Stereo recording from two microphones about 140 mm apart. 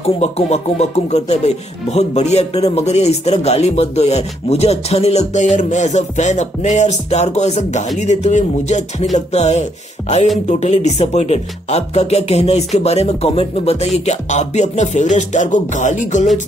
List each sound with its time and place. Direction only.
0.0 s speech: 50° left (ahead or behind)